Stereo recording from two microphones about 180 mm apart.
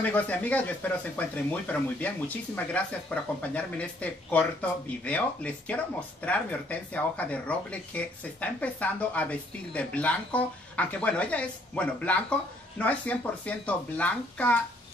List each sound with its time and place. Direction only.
0.0 s speech: 10° left (ahead or behind)